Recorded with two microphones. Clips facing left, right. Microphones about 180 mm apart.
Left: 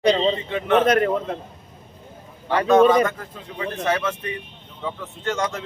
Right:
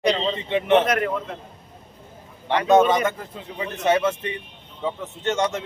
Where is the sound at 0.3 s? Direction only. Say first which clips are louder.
Right 2 dB; 25° right (ahead or behind).